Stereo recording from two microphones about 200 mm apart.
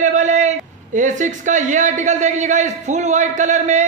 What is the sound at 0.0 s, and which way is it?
A man's voice, 35° right (ahead or behind).